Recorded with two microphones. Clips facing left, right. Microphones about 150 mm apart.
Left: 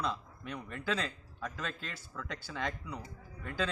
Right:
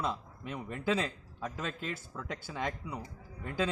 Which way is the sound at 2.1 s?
20° right (ahead or behind).